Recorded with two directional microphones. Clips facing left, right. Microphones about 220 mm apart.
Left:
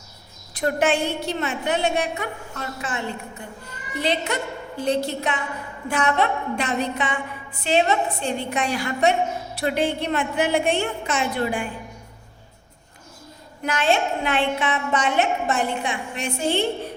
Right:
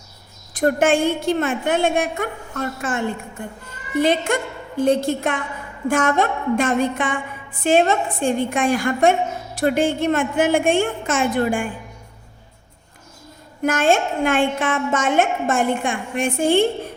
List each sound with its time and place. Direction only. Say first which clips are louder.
0.5 s a woman's voice: right 4 dB; 50° right (ahead or behind)
13.6 s a woman's voice: right 4 dB; 50° right (ahead or behind)